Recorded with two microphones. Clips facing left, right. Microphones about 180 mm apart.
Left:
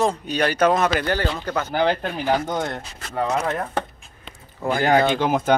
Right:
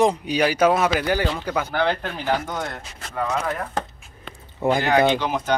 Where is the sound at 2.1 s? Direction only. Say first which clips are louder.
Left 3 dB; 20° left (ahead or behind).